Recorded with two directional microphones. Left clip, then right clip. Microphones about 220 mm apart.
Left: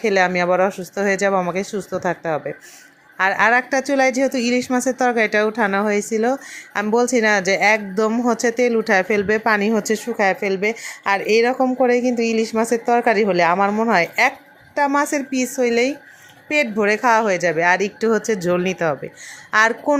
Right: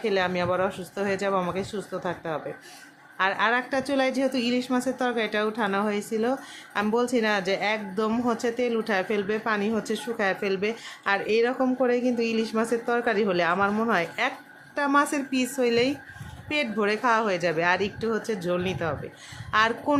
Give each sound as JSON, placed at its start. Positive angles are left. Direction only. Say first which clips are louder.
{"t": 0.0, "sound": "a woman's voice", "louder": "left 8 dB", "side_deg": 25}